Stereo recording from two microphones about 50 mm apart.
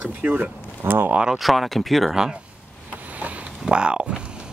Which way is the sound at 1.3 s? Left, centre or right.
Centre.